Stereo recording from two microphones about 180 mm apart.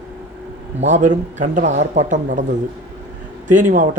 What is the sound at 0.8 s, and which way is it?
A man's voice, 40° right (ahead or behind).